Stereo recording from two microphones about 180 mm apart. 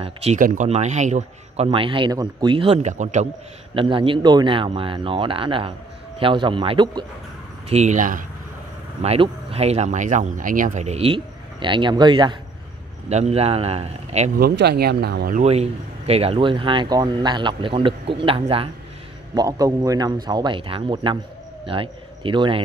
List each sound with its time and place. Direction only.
0.0 s speech: 35° right (ahead or behind)
3.7 s speech: 30° right (ahead or behind)
7.7 s speech: 40° right (ahead or behind)
9.0 s speech: 35° right (ahead or behind)
13.1 s speech: 35° right (ahead or behind)
14.4 s speech: 70° right (ahead or behind)
15.3 s speech: 35° right (ahead or behind)
19.3 s a man's voice: 20° right (ahead or behind)